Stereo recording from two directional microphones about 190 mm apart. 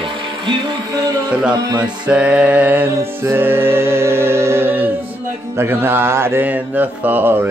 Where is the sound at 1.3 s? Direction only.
5° right (ahead or behind).